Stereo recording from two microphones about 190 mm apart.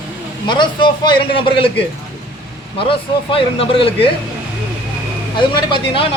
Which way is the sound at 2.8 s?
30° left (ahead or behind).